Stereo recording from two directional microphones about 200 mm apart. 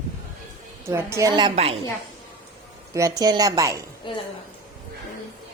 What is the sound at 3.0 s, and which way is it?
Speech, 15° right (ahead or behind).